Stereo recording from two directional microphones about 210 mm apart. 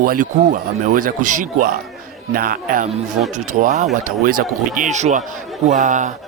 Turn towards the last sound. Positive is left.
turn(degrees=-35)  # may be behind; listen again after turning